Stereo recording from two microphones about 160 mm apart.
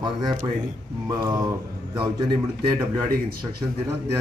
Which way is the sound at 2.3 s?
25° right (ahead or behind).